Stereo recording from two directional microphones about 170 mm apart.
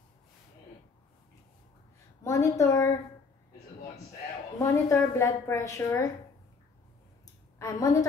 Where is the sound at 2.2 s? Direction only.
15° left (ahead or behind).